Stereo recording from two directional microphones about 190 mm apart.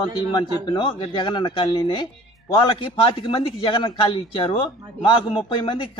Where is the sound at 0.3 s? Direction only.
25° left (ahead or behind).